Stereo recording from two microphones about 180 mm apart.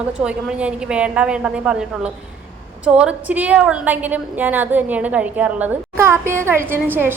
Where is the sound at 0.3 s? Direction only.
5° right (ahead or behind).